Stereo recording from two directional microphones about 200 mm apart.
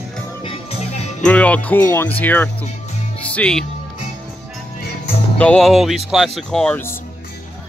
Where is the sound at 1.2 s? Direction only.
5° left (ahead or behind).